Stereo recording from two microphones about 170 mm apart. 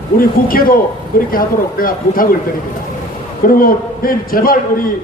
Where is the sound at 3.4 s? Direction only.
55° left (ahead or behind).